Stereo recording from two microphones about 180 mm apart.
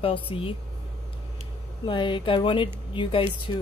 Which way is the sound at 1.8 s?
25° left (ahead or behind).